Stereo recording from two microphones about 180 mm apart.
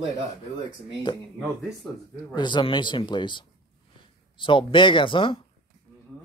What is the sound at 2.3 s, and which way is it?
Speech, 25° left (ahead or behind).